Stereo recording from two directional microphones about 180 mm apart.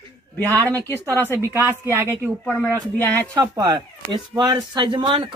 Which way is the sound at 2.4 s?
5° left (ahead or behind).